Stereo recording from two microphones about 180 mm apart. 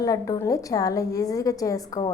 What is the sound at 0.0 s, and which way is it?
A woman's voice, 20° left (ahead or behind).